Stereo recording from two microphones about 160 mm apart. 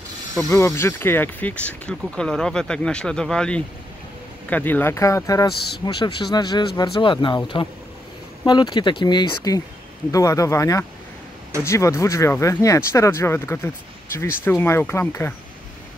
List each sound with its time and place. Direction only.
0.5 s speech: 15° left (ahead or behind)